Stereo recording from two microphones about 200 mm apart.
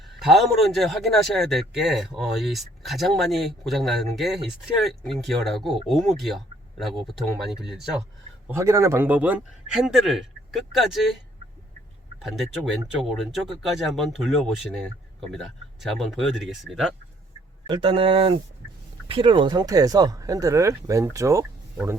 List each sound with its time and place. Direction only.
0.2 s speech: centre (ahead or behind)
8.4 s speech: 15° right (ahead or behind)
13.0 s speech: centre (ahead or behind)
15.8 s speech: centre (ahead or behind)
17.7 s speech: 25° right (ahead or behind)